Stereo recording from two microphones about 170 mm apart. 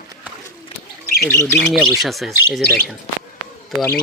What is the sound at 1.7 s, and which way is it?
Speech, centre (ahead or behind).